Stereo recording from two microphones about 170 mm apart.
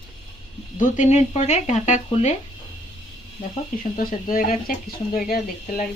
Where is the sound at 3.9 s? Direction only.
55° left (ahead or behind).